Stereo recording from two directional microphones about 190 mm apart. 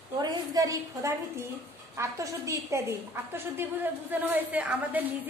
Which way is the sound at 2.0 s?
15° right (ahead or behind).